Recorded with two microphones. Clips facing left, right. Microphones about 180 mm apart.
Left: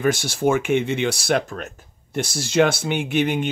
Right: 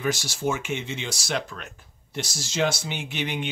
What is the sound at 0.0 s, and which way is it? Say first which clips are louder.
A man's voice: left 7 dB; 55° left (ahead or behind).